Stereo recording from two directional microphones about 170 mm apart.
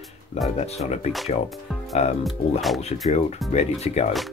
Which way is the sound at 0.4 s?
40° left (ahead or behind).